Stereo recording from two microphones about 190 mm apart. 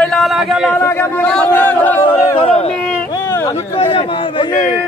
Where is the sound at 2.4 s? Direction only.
30° left (ahead or behind).